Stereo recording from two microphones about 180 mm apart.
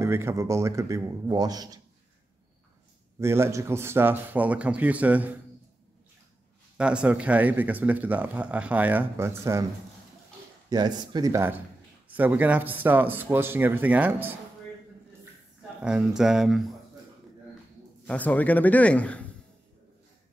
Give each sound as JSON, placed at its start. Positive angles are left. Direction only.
{"t": 0.0, "sound": "speech", "side_deg": -15}
{"t": 3.2, "sound": "speech", "side_deg": -15}
{"t": 6.8, "sound": "speech", "side_deg": -5}
{"t": 10.7, "sound": "speech", "side_deg": -25}
{"t": 15.8, "sound": "speech", "side_deg": -5}
{"t": 18.0, "sound": "a man's voice", "side_deg": 10}